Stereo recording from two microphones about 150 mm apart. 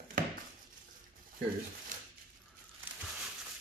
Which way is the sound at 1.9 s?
60° right (ahead or behind).